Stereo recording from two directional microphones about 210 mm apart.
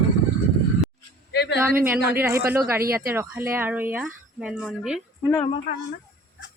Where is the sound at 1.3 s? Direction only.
50° left (ahead or behind).